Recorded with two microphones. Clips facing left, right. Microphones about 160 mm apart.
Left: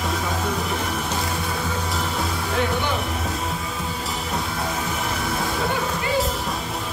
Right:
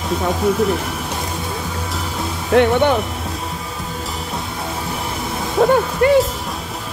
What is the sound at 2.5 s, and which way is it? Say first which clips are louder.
Speech: right 12 dB; 65° right (ahead or behind).